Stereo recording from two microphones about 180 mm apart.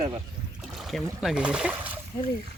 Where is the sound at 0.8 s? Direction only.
Centre (ahead or behind).